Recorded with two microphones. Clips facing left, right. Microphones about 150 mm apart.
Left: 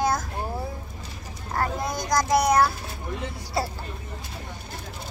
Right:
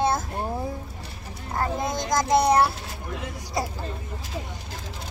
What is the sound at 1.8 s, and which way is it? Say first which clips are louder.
Speech: right 1 dB; 25° right (ahead or behind).